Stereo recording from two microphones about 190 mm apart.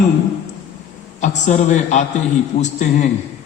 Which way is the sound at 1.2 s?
40° left (ahead or behind).